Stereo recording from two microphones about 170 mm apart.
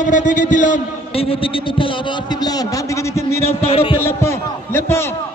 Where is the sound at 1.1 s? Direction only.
35° left (ahead or behind); by 3.4 s 15° left (ahead or behind).